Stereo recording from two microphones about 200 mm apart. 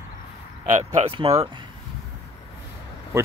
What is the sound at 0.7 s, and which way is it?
Speech, 30° right (ahead or behind).